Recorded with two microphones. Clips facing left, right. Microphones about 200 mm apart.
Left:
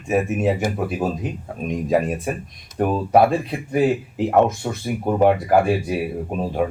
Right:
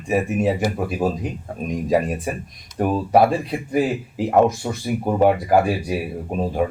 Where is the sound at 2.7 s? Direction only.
55° left (ahead or behind).